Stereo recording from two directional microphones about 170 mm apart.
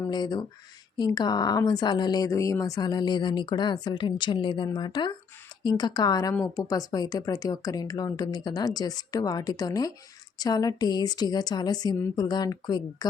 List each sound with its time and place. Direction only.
0.1 s a woman's voice: 25° left (ahead or behind)